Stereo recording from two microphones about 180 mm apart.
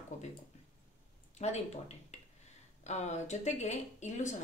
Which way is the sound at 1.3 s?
40° left (ahead or behind).